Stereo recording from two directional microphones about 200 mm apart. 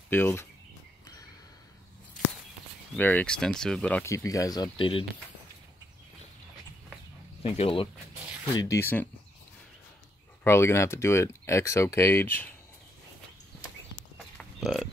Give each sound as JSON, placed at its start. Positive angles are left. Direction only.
{"t": 0.1, "sound": "speech", "side_deg": 10}
{"t": 3.0, "sound": "speech", "side_deg": 10}
{"t": 7.4, "sound": "speech", "side_deg": 30}
{"t": 8.5, "sound": "speech", "side_deg": 15}
{"t": 10.4, "sound": "speech", "side_deg": 15}
{"t": 14.1, "sound": "livestock", "side_deg": 0}